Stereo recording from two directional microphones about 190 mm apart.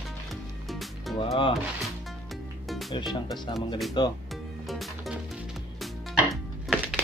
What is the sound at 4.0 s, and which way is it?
Speech, 25° left (ahead or behind).